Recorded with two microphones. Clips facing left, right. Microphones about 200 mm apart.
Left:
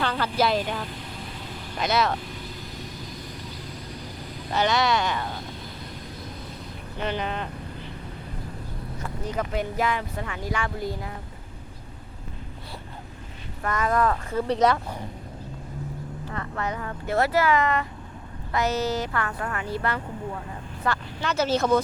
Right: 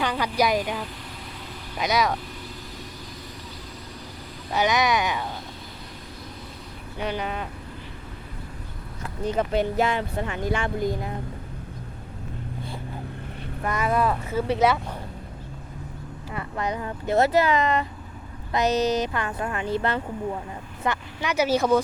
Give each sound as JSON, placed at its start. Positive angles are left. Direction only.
{"t": 0.0, "sound": "speech", "side_deg": -15}
{"t": 4.5, "sound": "speech", "side_deg": -15}
{"t": 7.0, "sound": "speech", "side_deg": -10}
{"t": 9.3, "sound": "speech", "side_deg": -25}
{"t": 13.7, "sound": "speech", "side_deg": -10}
{"t": 16.3, "sound": "speech", "side_deg": -15}